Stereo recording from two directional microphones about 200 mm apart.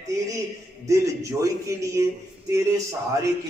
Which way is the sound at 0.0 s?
15° right (ahead or behind).